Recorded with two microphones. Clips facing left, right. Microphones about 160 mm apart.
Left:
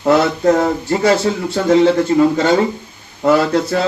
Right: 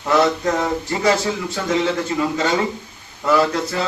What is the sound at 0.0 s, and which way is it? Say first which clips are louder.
Speech: left 5 dB; 50° left (ahead or behind).